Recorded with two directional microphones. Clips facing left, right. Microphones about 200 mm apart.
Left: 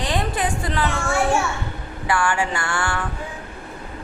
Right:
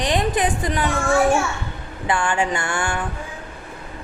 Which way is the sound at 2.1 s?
20° right (ahead or behind).